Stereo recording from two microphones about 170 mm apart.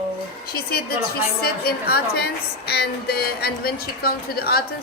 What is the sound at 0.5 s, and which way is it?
A woman's voice, 65° left (ahead or behind).